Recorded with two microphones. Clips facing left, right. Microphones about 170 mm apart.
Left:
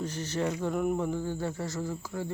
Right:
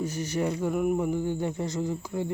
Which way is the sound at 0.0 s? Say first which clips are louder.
Right 3 dB; 10° right (ahead or behind).